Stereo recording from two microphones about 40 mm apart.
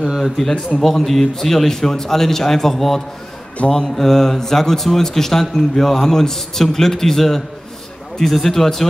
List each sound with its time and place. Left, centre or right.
0.2 s speech: centre